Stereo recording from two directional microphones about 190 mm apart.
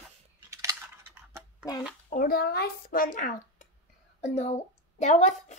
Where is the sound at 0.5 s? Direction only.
15° right (ahead or behind).